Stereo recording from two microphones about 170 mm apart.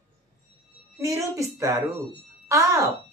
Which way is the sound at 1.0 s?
20° right (ahead or behind).